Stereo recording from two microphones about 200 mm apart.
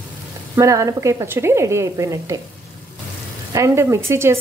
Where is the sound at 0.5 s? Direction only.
15° right (ahead or behind).